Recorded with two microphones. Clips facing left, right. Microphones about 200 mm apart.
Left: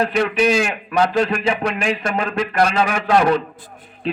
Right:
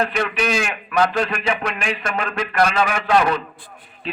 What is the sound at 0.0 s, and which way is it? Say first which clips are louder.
A man's voice: left 4 dB; 30° left (ahead or behind).